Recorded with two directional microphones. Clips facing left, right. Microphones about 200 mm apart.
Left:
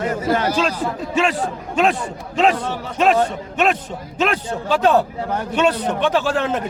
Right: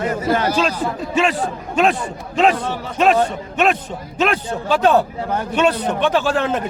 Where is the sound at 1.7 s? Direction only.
55° right (ahead or behind).